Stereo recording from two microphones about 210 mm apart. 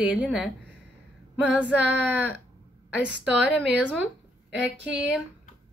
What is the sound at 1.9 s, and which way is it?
A woman's voice, 5° right (ahead or behind).